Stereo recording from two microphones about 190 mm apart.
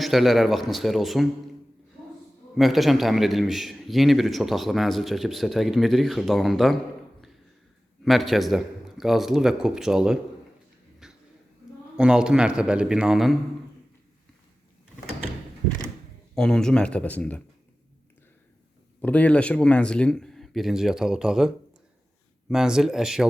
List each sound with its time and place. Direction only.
0.0 s a man's voice: centre (ahead or behind)
2.6 s a man's voice: centre (ahead or behind)
8.0 s a man's voice: centre (ahead or behind)
11.0 s a sound: centre (ahead or behind)
11.9 s a man's voice: 5° right (ahead or behind)
16.3 s a man's voice: 5° left (ahead or behind)
19.0 s a man's voice: 10° left (ahead or behind)